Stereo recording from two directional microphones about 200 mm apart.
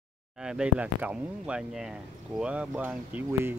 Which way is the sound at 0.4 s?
5° right (ahead or behind).